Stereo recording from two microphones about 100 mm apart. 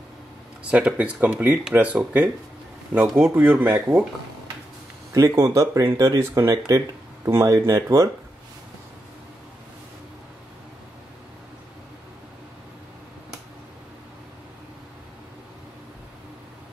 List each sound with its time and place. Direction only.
0.7 s speech: 15° right (ahead or behind)
5.1 s speech: 30° right (ahead or behind)